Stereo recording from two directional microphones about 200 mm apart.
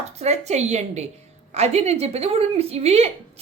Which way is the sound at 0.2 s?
35° right (ahead or behind).